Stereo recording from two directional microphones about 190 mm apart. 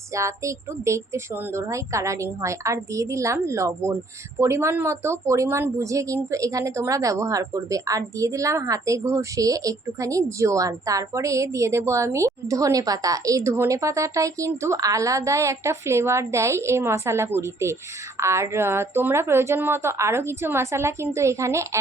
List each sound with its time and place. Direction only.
0.1 s a woman's voice: 15° right (ahead or behind)